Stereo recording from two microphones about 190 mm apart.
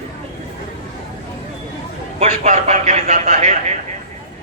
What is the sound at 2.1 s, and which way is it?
A man's voice, 35° right (ahead or behind).